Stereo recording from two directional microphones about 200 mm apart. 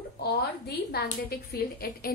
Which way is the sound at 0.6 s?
50° left (ahead or behind).